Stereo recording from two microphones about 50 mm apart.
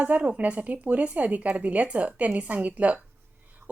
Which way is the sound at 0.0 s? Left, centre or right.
Right.